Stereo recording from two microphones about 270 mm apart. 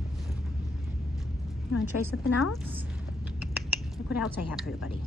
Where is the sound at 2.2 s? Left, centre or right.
Left.